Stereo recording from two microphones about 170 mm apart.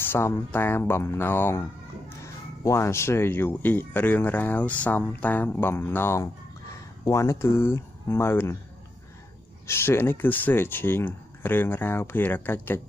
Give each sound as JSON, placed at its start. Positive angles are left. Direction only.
{"t": 0.0, "sound": "speech", "side_deg": 10}
{"t": 9.7, "sound": "speech", "side_deg": 15}